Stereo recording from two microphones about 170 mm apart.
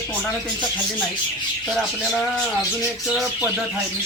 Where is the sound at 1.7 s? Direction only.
Centre (ahead or behind).